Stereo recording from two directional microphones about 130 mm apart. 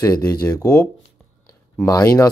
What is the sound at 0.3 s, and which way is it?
Speech, 25° left (ahead or behind).